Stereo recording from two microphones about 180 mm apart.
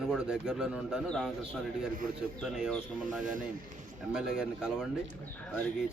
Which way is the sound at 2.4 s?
Centre (ahead or behind).